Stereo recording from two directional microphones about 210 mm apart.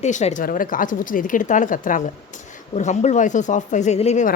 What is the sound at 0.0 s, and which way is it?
Speech, 35° left (ahead or behind).